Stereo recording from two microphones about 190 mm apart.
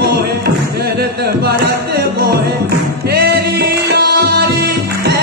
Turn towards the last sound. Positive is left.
turn(degrees=-55)  # may be behind; listen again after turning